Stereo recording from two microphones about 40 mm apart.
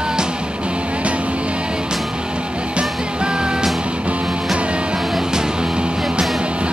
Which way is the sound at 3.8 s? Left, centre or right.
Right.